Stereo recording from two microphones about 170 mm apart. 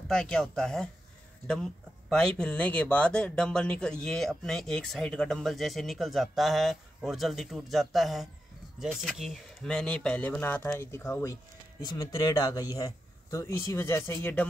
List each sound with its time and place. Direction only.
0.1 s speech: 5° left (ahead or behind)